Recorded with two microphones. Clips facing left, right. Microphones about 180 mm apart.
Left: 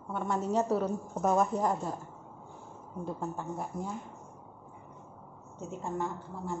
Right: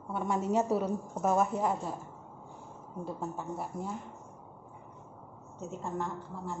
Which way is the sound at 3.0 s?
5° right (ahead or behind).